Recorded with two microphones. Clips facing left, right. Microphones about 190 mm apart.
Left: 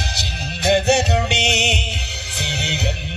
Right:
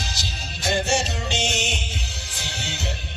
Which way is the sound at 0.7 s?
65° left (ahead or behind).